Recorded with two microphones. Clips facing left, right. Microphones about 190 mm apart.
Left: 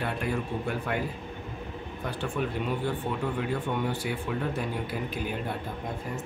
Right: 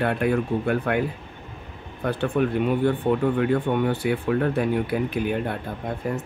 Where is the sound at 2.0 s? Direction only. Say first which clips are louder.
Right 9 dB; 60° right (ahead or behind).